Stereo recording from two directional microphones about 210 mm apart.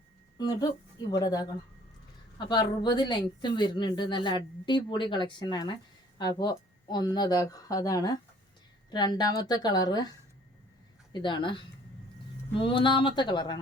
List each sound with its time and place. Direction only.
0.3 s a woman's voice: 20° left (ahead or behind)
11.1 s a woman's voice: 20° left (ahead or behind)